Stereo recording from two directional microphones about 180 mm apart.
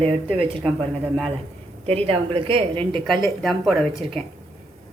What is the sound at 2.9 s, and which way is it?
Speech, centre (ahead or behind).